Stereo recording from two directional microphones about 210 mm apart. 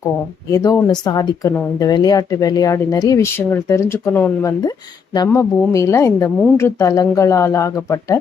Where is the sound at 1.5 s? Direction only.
10° left (ahead or behind).